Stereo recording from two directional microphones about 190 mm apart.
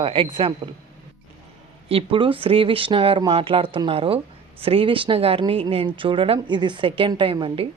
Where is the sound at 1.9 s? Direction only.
30° right (ahead or behind).